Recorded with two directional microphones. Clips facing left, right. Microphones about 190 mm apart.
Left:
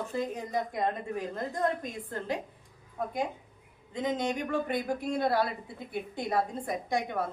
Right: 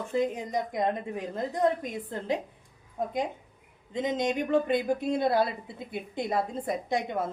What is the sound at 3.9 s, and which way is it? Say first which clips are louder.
A woman's voice: right 3 dB; 20° right (ahead or behind).